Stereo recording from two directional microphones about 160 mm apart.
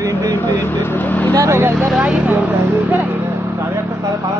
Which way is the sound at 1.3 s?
20° right (ahead or behind).